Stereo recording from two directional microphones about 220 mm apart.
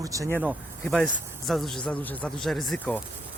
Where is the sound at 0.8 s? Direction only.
5° left (ahead or behind).